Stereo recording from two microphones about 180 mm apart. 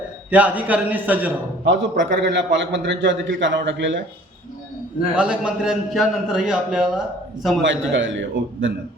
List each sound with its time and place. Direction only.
0.3 s a man's voice: 10° right (ahead or behind)
1.6 s a man's voice: 85° right
5.1 s a man's voice: 5° right (ahead or behind)
7.6 s a man's voice: 90° right